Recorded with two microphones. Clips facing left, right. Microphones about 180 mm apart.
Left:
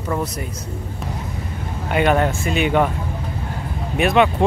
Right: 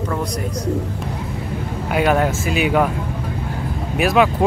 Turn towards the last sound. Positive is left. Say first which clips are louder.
# even
turn(degrees=0)  # may be behind; listen again after turning